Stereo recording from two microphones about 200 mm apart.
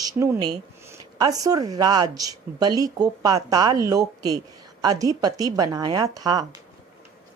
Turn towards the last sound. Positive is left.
turn(degrees=-20)  # may be behind; listen again after turning